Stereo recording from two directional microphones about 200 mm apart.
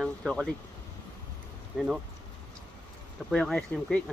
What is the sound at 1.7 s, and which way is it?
Speech, centre (ahead or behind).